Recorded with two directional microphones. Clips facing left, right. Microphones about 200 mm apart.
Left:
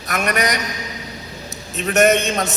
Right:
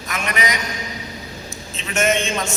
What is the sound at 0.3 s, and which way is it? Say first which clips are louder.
Speech: left 3 dB; 40° left (ahead or behind).